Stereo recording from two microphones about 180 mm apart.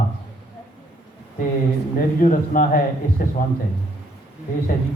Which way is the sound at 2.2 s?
45° left (ahead or behind).